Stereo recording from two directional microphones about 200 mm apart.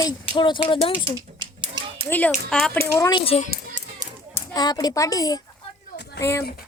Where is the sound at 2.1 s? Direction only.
10° left (ahead or behind).